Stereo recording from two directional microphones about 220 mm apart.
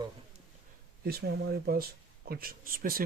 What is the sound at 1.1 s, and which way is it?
Speech, 45° right (ahead or behind).